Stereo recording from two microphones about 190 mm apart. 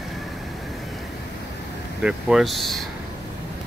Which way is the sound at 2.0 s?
5° right (ahead or behind).